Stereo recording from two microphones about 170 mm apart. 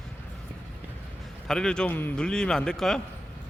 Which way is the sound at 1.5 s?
5° left (ahead or behind).